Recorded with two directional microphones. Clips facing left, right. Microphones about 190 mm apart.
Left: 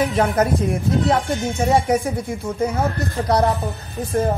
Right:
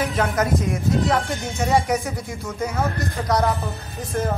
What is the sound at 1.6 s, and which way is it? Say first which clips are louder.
Speech: left 2 dB; 30° left (ahead or behind).